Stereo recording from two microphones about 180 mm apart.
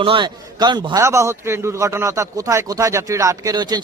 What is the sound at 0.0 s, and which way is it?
A man's voice, 25° right (ahead or behind).